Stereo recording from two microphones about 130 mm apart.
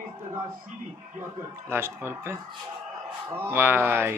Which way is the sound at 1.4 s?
20° right (ahead or behind).